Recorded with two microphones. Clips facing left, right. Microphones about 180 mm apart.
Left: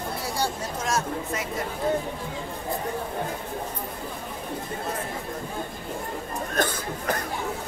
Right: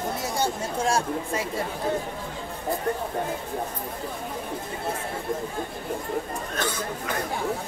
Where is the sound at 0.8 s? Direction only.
30° right (ahead or behind).